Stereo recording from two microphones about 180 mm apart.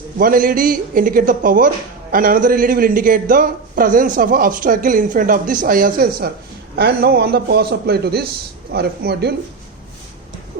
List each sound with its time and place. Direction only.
0.2 s a man's voice: 50° right (ahead or behind)